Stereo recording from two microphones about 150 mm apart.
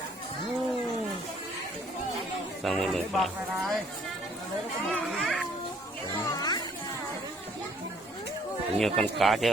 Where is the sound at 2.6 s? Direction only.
Centre (ahead or behind).